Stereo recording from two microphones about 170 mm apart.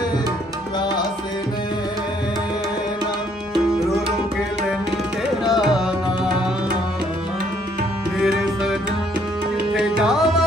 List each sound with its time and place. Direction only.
5.5 s music: centre (ahead or behind)
9.8 s music: centre (ahead or behind)